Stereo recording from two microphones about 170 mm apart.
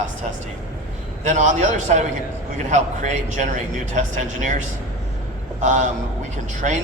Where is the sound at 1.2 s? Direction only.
45° right (ahead or behind).